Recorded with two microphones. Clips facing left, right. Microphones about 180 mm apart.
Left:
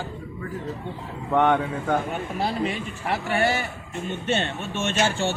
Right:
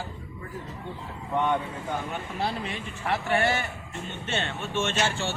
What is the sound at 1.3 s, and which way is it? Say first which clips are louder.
Speech: left 6 dB; 70° left (ahead or behind).